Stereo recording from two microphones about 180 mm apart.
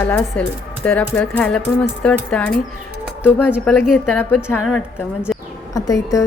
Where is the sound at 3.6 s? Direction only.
10° left (ahead or behind).